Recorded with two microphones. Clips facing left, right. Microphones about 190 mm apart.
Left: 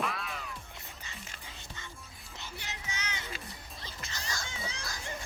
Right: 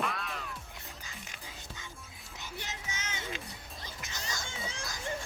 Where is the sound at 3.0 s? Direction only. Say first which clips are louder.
Left 1 dB; 45° right (ahead or behind).